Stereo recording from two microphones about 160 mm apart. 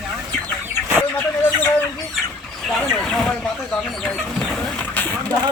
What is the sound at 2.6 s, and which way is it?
Speech, centre (ahead or behind).